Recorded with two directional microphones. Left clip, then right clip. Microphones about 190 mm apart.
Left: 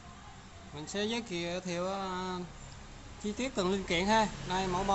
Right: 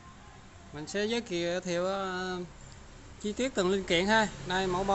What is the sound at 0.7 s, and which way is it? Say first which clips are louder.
A man's voice: right 3 dB; 20° right (ahead or behind).